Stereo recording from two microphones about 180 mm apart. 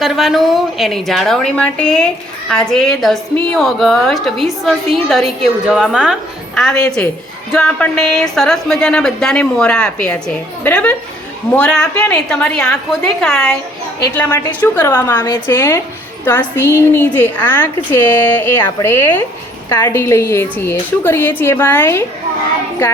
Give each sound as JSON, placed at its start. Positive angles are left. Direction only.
{"t": 0.0, "sound": "a woman's voice", "side_deg": 0}